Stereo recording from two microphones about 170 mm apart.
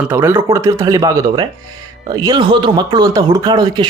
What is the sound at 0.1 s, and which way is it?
Speech, 15° right (ahead or behind).